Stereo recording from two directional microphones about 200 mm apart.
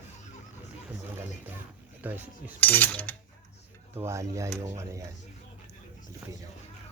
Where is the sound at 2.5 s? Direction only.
10° left (ahead or behind).